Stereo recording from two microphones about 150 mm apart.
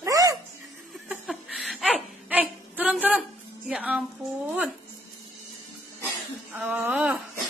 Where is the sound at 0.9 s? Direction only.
Centre (ahead or behind).